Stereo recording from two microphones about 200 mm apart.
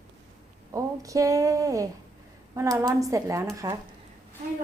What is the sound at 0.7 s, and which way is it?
Speech, 15° right (ahead or behind).